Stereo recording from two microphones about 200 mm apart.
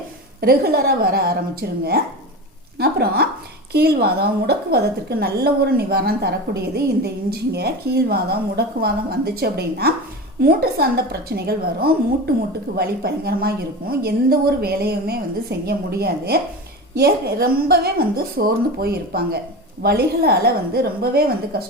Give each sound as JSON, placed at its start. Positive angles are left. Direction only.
{"t": 0.4, "sound": "a woman's voice", "side_deg": -50}
{"t": 2.7, "sound": "a woman's voice", "side_deg": -50}